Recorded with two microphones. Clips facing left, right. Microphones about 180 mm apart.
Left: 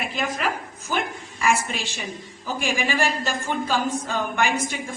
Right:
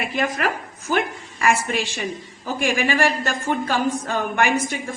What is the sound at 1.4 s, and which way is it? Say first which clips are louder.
Speech: right 3 dB; 60° right (ahead or behind).